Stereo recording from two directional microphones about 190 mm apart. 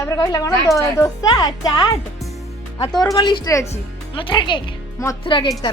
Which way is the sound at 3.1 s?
20° left (ahead or behind).